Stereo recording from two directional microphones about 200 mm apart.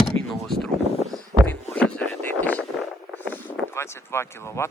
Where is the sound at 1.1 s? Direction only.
5° left (ahead or behind).